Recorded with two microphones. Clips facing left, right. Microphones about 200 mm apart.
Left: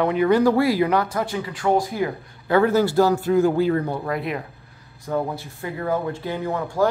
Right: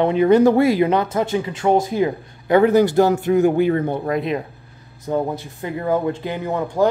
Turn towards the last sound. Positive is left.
turn(degrees=-20)  # may be behind; listen again after turning